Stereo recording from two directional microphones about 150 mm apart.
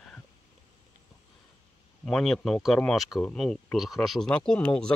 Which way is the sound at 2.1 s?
5° left (ahead or behind).